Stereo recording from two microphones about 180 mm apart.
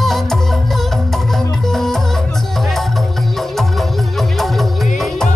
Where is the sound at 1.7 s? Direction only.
Centre (ahead or behind).